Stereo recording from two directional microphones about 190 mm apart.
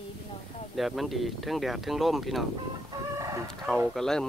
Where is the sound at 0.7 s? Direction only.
Centre (ahead or behind).